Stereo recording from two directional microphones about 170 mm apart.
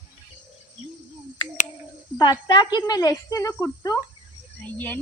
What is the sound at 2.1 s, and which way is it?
Speech, 25° left (ahead or behind).